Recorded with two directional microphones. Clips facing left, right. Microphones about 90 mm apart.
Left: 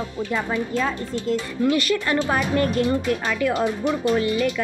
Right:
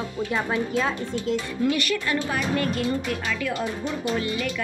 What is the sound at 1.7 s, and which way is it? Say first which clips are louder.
Speech: left 5 dB; 30° left (ahead or behind).